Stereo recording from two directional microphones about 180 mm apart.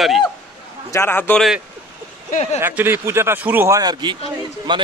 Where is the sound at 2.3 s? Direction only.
40° left (ahead or behind).